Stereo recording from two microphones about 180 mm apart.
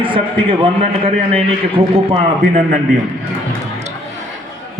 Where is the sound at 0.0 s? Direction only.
30° right (ahead or behind).